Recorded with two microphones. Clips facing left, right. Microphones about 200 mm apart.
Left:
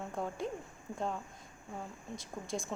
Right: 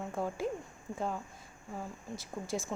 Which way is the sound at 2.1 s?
Centre (ahead or behind).